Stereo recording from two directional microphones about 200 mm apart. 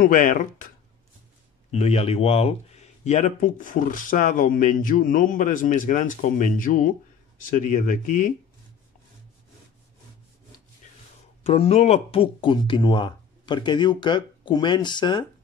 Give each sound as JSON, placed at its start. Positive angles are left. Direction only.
{"t": 0.0, "sound": "speech", "side_deg": 40}
{"t": 1.7, "sound": "speech", "side_deg": 30}
{"t": 11.4, "sound": "speech", "side_deg": 30}